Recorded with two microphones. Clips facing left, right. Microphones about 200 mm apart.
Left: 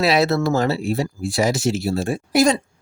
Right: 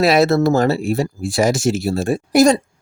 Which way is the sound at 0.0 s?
45° right (ahead or behind).